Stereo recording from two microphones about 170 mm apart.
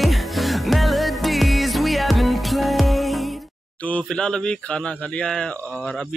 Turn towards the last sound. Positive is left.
turn(degrees=5)  # may be behind; listen again after turning